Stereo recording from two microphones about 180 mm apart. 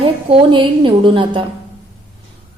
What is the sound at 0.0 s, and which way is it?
A woman's voice, 30° right (ahead or behind).